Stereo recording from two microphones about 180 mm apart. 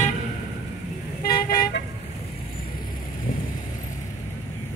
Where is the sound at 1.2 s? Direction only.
55° left (ahead or behind).